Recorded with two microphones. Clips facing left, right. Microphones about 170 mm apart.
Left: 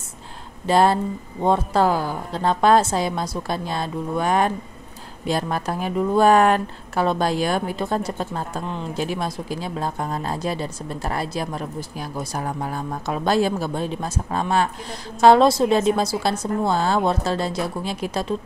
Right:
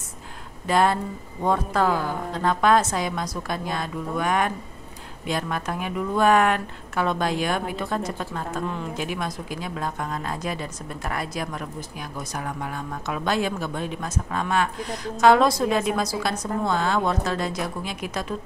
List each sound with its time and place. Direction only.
0.7 s a woman's voice: 30° left (ahead or behind)